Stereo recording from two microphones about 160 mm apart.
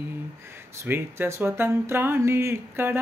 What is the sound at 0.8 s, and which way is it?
Speech, 15° right (ahead or behind).